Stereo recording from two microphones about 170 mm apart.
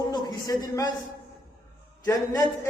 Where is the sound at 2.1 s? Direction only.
20° left (ahead or behind).